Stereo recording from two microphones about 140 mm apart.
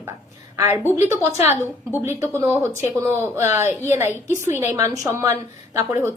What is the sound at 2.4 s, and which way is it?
Speech, 20° right (ahead or behind).